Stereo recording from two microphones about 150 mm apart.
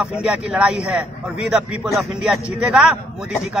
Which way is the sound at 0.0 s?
10° right (ahead or behind).